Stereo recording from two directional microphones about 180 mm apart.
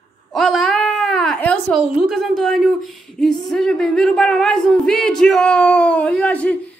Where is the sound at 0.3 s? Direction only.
Centre (ahead or behind).